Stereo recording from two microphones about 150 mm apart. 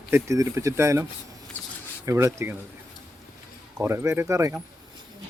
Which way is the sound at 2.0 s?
20° right (ahead or behind).